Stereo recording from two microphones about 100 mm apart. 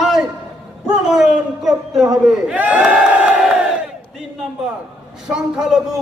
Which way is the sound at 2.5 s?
15° right (ahead or behind).